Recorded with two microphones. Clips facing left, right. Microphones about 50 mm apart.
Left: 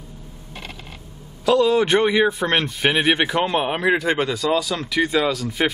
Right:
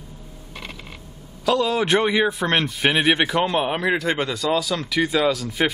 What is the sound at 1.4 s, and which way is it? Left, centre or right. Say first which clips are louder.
A man's voice: left 4 dB; centre.